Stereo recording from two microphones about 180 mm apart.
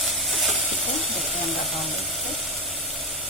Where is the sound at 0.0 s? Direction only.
Centre (ahead or behind).